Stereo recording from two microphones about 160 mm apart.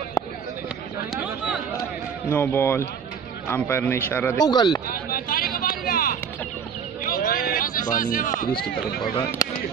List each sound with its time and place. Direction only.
1.1 s chatter: 5° right (ahead or behind)
2.3 s a man's voice: 10° left (ahead or behind)
4.4 s speech: 25° left (ahead or behind)
4.8 s vehicle: 65° left (ahead or behind)
7.0 s a sound: 60° left (ahead or behind)